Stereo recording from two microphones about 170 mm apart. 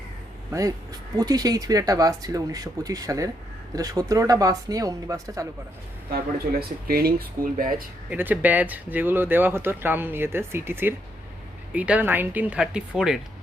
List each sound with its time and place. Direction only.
1.1 s speech: 20° right (ahead or behind)
6.6 s speech: 65° right (ahead or behind)
8.1 s speech: 10° right (ahead or behind)